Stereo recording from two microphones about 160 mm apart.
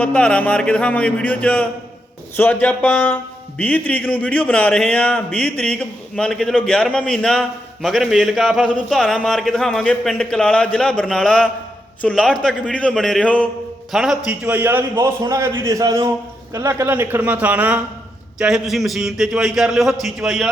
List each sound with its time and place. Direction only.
0.0 s a man's voice: 5° left (ahead or behind)